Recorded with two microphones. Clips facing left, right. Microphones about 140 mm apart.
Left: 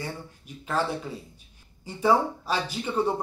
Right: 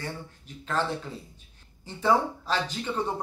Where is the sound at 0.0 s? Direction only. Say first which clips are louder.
Left 1 dB; 10° left (ahead or behind).